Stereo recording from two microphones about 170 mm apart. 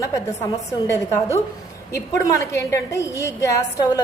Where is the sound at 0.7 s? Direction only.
15° left (ahead or behind).